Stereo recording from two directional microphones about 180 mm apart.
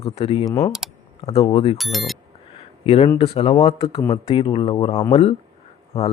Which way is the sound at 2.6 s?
35° left (ahead or behind).